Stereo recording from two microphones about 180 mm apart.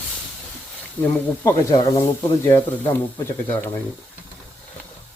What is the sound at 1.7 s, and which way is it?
Speech, 20° left (ahead or behind).